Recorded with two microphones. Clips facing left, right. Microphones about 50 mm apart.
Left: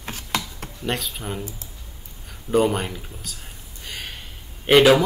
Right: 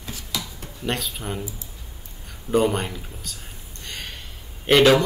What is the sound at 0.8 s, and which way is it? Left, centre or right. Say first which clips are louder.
Speech: even; centre.